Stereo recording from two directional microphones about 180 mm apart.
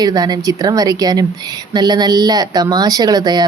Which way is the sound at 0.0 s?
20° right (ahead or behind).